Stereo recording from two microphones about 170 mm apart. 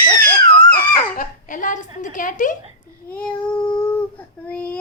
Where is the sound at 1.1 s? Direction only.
50° left (ahead or behind).